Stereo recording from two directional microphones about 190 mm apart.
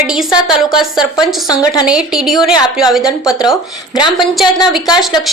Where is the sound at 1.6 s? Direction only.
20° left (ahead or behind).